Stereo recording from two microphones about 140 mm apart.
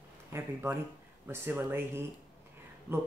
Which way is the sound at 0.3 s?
15° right (ahead or behind).